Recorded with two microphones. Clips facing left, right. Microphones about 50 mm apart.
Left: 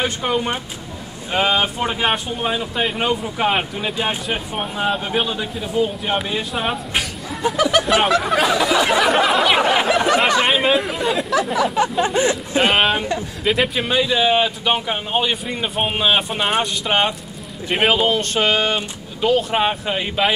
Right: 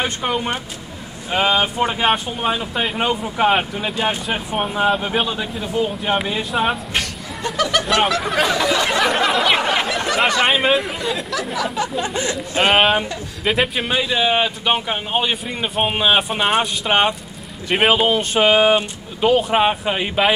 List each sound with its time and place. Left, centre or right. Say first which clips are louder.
0.0 s speech: left 1 dB; centre
9.6 s a sound: left 3 dB; centre
10.4 s speech: even; centre
11.5 s speech: left 2 dB; left
12.5 s speech: right 3 dB; centre